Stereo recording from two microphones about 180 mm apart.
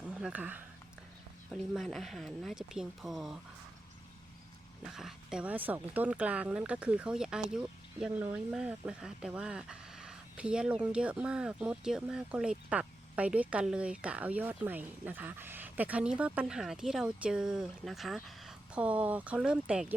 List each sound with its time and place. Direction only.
0.1 s speech: 5° right (ahead or behind)
4.9 s speech: centre (ahead or behind)